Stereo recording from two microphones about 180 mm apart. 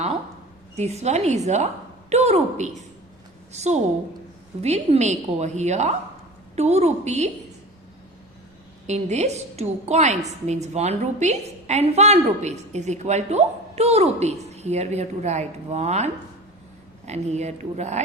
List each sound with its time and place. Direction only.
0.8 s a woman's voice: 35° right (ahead or behind)
8.9 s a woman's voice: 40° right (ahead or behind)
17.1 s a woman's voice: 40° right (ahead or behind)